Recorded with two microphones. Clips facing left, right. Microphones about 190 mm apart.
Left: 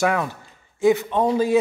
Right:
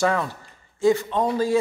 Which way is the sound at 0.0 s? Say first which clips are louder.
Left 1 dB; 15° left (ahead or behind).